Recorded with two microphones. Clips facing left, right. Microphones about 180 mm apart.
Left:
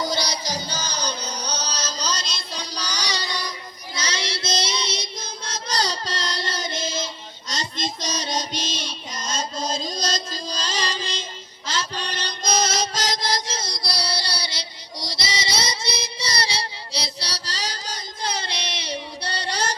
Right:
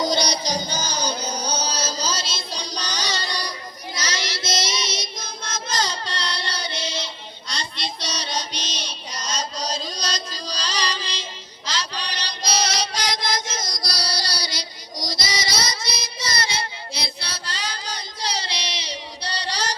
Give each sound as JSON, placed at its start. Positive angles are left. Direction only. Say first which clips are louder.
{"t": 0.0, "sound": "music", "louder": "right 3 dB", "side_deg": -20}
{"t": 1.3, "sound": "music", "louder": "right 3 dB", "side_deg": -50}
{"t": 1.6, "sound": "music", "louder": "right 2 dB", "side_deg": -10}
{"t": 3.9, "sound": "child singing", "louder": "left 1 dB", "side_deg": 30}
{"t": 10.8, "sound": "music", "louder": "even", "side_deg": 45}
{"t": 11.7, "sound": "mantra", "louder": "left 1 dB", "side_deg": 50}